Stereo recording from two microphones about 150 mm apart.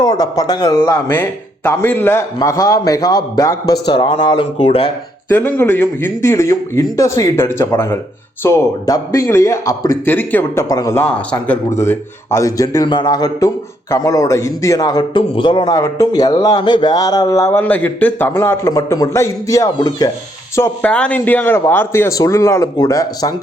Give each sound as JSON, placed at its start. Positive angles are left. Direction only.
{"t": 0.0, "sound": "a man's voice", "side_deg": 25}
{"t": 5.3, "sound": "a man's voice", "side_deg": 15}
{"t": 11.1, "sound": "a man's voice", "side_deg": 10}
{"t": 11.8, "sound": "a man's voice", "side_deg": 20}
{"t": 17.6, "sound": "a man's voice", "side_deg": 10}
{"t": 20.6, "sound": "a man's voice", "side_deg": 10}